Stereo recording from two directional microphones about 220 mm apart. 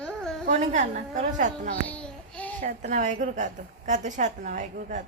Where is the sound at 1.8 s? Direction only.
5° left (ahead or behind).